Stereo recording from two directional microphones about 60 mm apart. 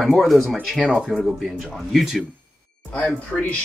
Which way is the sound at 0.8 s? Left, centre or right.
Centre.